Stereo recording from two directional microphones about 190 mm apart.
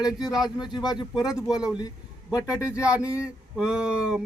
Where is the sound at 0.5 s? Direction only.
20° left (ahead or behind).